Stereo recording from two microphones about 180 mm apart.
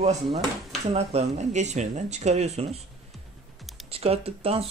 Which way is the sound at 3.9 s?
35° right (ahead or behind).